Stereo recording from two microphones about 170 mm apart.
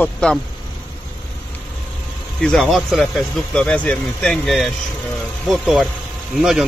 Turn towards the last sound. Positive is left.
turn(degrees=0)  # may be behind; listen again after turning